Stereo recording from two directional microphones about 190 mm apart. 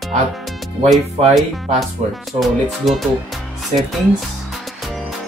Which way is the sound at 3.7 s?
35° right (ahead or behind).